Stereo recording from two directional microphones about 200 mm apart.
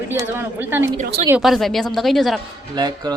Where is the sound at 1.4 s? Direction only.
Centre (ahead or behind).